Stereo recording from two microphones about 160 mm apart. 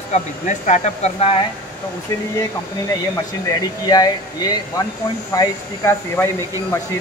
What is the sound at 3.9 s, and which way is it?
Speech, 25° left (ahead or behind).